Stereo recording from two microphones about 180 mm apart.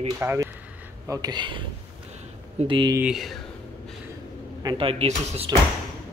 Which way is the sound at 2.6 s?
25° right (ahead or behind).